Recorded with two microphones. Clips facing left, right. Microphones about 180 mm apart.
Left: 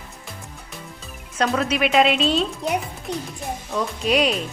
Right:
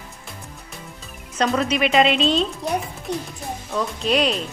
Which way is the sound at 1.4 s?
5° left (ahead or behind).